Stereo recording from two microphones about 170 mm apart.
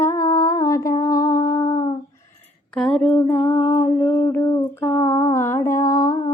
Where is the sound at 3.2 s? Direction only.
15° left (ahead or behind).